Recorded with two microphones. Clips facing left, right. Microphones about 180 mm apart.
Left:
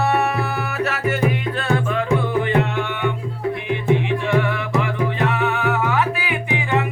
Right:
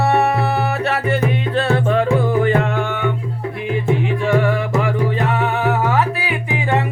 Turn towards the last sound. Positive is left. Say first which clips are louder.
# right 3 dB
turn(degrees=-35)  # may be behind; listen again after turning